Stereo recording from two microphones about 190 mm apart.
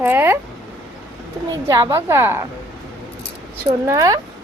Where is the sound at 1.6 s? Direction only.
15° right (ahead or behind).